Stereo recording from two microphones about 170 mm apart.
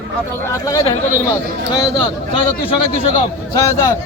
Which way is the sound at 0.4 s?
20° left (ahead or behind).